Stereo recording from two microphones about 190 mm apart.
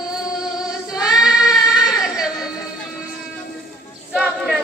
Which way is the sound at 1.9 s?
Centre (ahead or behind).